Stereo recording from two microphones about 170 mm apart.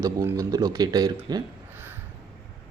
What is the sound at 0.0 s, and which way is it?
Speech, 20° right (ahead or behind).